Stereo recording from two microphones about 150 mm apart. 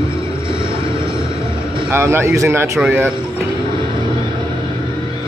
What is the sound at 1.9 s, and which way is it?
Speech, 15° right (ahead or behind).